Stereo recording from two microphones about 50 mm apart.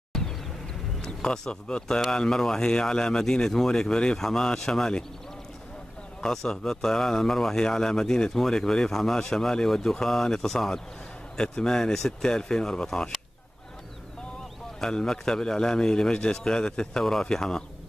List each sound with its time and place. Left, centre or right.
0.1 s a sound: centre
1.0 s speech: centre
6.2 s speech: centre
14.8 s speech: centre